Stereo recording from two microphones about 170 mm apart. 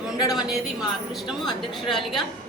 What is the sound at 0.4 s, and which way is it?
A woman's voice, centre (ahead or behind).